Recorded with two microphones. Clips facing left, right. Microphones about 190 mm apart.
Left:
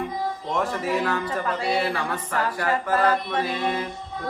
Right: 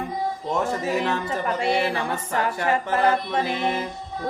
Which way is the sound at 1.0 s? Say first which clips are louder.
Right 1 dB; 25° right (ahead or behind).